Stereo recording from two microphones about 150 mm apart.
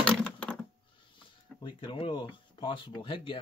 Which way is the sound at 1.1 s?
35° left (ahead or behind).